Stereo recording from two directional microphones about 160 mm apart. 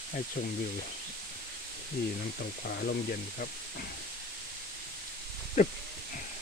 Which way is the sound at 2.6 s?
70° left (ahead or behind).